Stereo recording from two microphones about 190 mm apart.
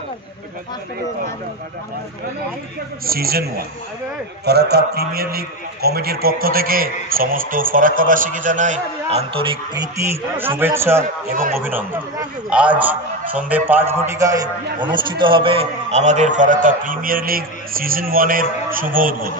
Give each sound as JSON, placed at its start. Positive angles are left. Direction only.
{"t": 3.1, "sound": "a man's voice", "side_deg": -55}
{"t": 9.9, "sound": "a man's voice", "side_deg": -10}